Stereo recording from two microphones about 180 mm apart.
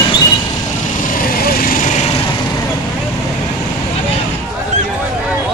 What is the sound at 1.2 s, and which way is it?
Vehicle, 55° left (ahead or behind).